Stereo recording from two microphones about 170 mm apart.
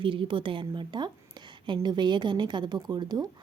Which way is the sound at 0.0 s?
30° right (ahead or behind).